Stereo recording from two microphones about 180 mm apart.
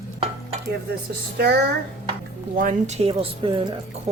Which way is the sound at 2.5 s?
45° right (ahead or behind).